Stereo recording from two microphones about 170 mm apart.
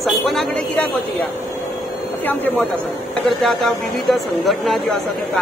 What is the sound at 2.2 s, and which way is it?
A man's voice, 10° left (ahead or behind).